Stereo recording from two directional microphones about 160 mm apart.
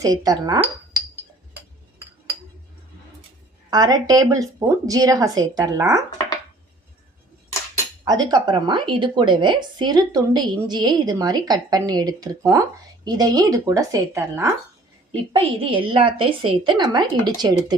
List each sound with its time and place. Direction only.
0.0 s a woman's voice: 25° right (ahead or behind)
3.7 s a woman's voice: 25° right (ahead or behind)
8.0 s a woman's voice: 25° right (ahead or behind)
15.1 s a woman's voice: 35° right (ahead or behind)